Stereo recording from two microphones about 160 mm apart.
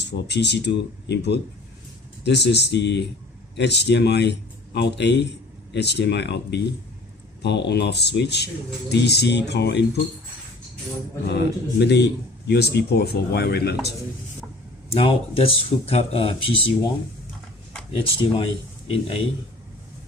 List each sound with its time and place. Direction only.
0.0 s a man's voice: 90° left
11.2 s a man's voice: 90° left
15.0 s speech: 35° left (ahead or behind)
17.9 s speech: 35° left (ahead or behind)